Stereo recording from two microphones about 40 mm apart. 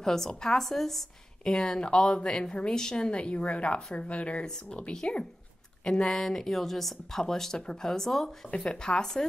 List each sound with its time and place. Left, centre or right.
0.0 s a woman's voice: centre; by 4.5 s left
4.5 s a woman's voice: centre
6.0 s a woman's voice: centre
8.5 s a woman's voice: centre